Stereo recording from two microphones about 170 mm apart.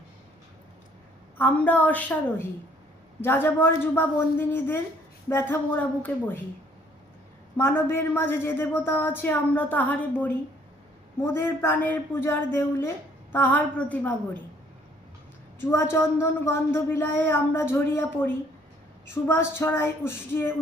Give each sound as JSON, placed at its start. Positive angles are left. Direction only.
{"t": 1.4, "sound": "a woman's voice", "side_deg": 10}
{"t": 7.5, "sound": "a woman's voice", "side_deg": 10}
{"t": 15.6, "sound": "a woman's voice", "side_deg": 15}